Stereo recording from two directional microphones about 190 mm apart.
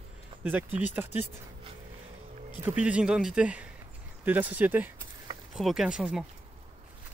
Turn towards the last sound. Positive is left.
turn(degrees=-5)  # may be behind; listen again after turning